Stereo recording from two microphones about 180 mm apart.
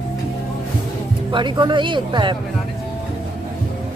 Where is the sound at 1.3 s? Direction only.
25° right (ahead or behind).